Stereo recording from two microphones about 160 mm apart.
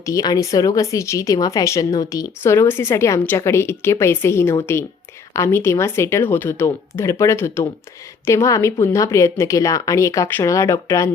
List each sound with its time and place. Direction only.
0.0 s speech: 20° left (ahead or behind)